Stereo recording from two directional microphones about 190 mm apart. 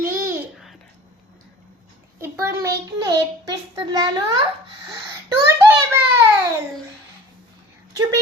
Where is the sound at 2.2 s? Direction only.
15° right (ahead or behind).